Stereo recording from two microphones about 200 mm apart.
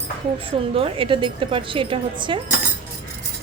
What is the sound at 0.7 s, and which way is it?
Speech, 25° right (ahead or behind).